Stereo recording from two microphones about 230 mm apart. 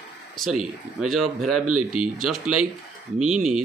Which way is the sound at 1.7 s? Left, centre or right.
Right.